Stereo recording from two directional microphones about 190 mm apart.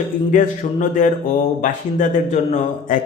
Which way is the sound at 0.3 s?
40° left (ahead or behind).